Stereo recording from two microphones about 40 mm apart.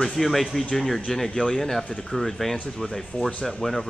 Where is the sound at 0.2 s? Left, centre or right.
Centre.